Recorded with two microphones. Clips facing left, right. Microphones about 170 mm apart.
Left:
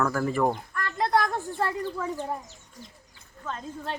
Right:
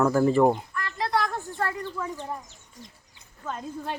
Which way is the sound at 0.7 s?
50° left (ahead or behind).